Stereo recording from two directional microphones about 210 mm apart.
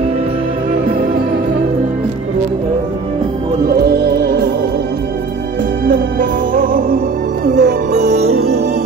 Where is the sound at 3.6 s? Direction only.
45° right (ahead or behind).